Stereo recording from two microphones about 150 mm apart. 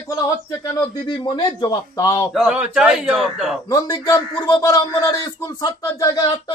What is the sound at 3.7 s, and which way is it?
Speech, 25° left (ahead or behind).